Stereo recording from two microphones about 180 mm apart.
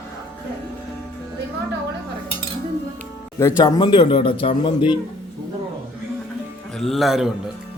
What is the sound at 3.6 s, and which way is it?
A man's voice, 25° left (ahead or behind).